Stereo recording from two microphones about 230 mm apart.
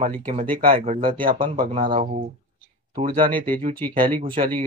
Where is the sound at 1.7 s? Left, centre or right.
Right.